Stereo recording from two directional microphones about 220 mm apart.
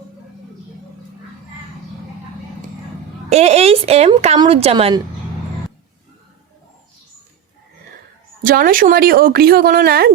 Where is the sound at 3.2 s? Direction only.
30° right (ahead or behind).